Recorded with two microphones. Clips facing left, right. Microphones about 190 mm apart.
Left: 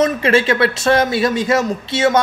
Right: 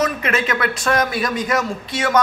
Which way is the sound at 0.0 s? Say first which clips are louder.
Left 6 dB; 30° left (ahead or behind).